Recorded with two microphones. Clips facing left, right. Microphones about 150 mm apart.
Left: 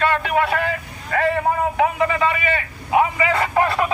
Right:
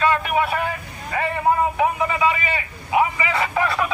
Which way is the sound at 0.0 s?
70° left (ahead or behind).